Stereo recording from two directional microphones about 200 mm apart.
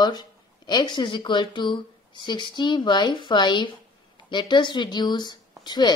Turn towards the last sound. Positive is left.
turn(degrees=20)  # may be behind; listen again after turning